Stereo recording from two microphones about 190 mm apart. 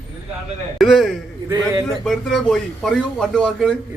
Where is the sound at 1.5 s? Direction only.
15° right (ahead or behind).